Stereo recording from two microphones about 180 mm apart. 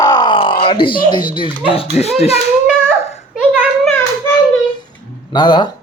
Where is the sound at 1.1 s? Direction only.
25° left (ahead or behind).